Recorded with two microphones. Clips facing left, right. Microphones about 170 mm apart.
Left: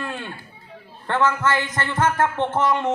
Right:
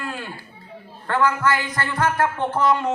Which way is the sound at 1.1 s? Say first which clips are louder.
Even; 25° left (ahead or behind).